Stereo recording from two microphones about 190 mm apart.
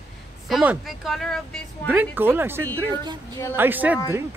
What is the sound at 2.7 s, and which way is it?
Speech, 20° right (ahead or behind).